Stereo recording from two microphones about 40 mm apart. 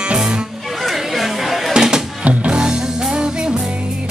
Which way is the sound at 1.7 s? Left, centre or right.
Centre.